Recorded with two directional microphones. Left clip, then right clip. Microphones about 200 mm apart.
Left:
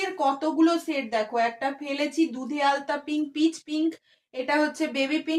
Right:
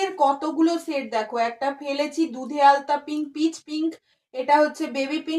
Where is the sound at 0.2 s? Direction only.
25° left (ahead or behind).